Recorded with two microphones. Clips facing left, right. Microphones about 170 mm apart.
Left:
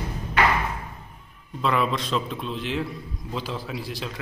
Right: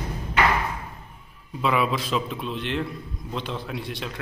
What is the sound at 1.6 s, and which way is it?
A man's voice, 5° right (ahead or behind).